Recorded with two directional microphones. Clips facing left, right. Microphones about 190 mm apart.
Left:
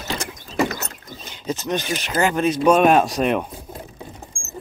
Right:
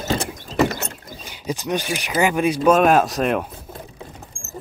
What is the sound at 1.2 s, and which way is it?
Speech, 10° right (ahead or behind).